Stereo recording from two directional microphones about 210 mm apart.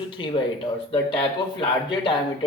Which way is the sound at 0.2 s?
25° left (ahead or behind).